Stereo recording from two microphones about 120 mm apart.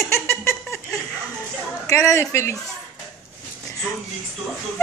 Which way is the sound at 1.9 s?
25° left (ahead or behind).